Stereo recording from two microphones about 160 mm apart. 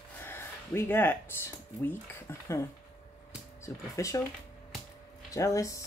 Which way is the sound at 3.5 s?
20° left (ahead or behind).